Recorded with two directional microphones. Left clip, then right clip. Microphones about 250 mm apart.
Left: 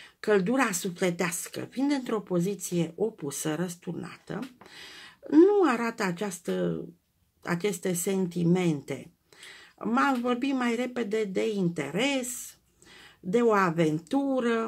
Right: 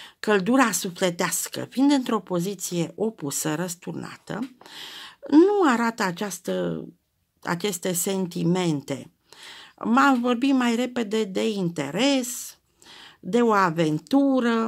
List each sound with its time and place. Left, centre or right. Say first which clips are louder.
0.0 s speech: right 3 dB; right